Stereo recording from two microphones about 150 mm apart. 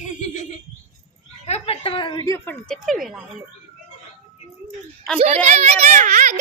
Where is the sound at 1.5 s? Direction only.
45° left (ahead or behind); by 2.7 s 15° left (ahead or behind).